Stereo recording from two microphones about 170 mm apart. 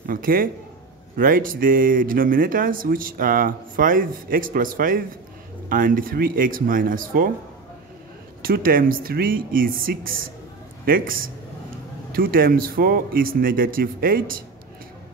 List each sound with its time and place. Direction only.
0.0 s a man's voice: 55° right (ahead or behind)
8.4 s speech: 55° right (ahead or behind)
12.1 s speech: 60° right (ahead or behind)